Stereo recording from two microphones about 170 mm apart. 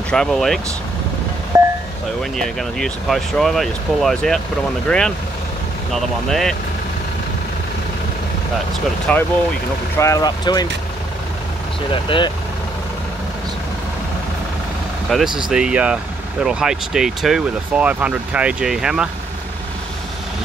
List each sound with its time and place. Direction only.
0.1 s speech: 5° left (ahead or behind)
1.5 s a sound: 20° right (ahead or behind)
2.3 s speech: 5° left (ahead or behind)
9.1 s speech: 5° left (ahead or behind)
9.9 s speech: 20° left (ahead or behind)
11.9 s speech: 30° left (ahead or behind)
15.2 s speech: 25° right (ahead or behind)
15.5 s speech: 5° right (ahead or behind)